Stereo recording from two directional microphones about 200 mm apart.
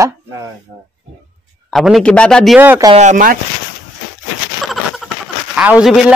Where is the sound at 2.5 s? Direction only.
10° right (ahead or behind).